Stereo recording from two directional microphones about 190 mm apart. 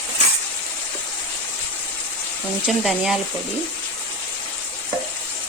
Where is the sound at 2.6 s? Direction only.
5° right (ahead or behind).